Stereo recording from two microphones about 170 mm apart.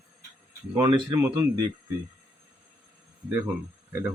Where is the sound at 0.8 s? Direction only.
25° right (ahead or behind).